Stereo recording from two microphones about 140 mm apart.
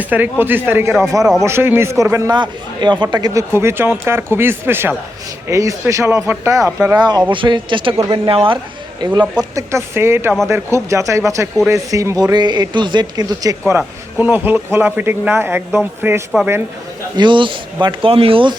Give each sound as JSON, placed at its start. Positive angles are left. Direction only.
{"t": 0.0, "sound": "speech", "side_deg": -10}
{"t": 2.3, "sound": "speech", "side_deg": -30}
{"t": 7.3, "sound": "speech", "side_deg": -35}
{"t": 9.0, "sound": "speech", "side_deg": -30}
{"t": 17.2, "sound": "speech", "side_deg": -35}